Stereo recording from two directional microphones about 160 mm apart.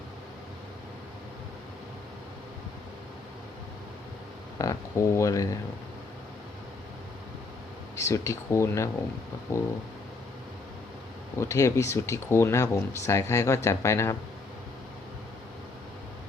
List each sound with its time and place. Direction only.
4.5 s speech: 20° left (ahead or behind)
7.9 s speech: 20° left (ahead or behind)
11.3 s speech: 20° left (ahead or behind)